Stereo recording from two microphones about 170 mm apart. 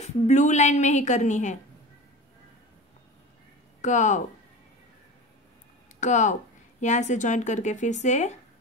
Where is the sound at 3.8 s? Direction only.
45° left (ahead or behind).